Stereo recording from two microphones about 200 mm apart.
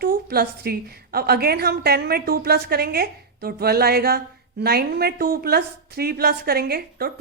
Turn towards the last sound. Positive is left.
turn(degrees=-50)  # may be behind; listen again after turning